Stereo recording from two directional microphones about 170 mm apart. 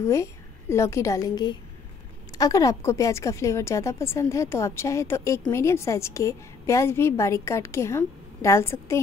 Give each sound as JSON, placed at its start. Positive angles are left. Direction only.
{"t": 0.0, "sound": "a woman's voice", "side_deg": 15}